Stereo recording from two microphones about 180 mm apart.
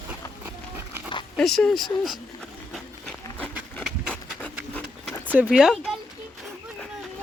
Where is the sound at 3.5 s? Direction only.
5° right (ahead or behind).